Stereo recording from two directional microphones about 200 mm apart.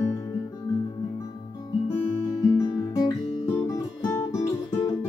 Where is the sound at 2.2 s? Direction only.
15° left (ahead or behind).